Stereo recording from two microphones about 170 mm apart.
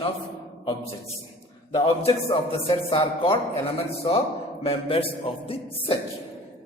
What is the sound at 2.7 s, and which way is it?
Speech, 30° left (ahead or behind).